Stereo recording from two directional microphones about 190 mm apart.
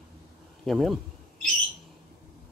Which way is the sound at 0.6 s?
Centre (ahead or behind).